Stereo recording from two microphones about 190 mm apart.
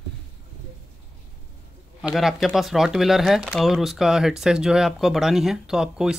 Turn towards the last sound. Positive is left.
turn(degrees=-5)  # may be behind; listen again after turning